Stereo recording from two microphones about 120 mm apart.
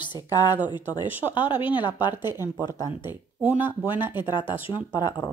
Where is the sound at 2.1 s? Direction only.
20° right (ahead or behind).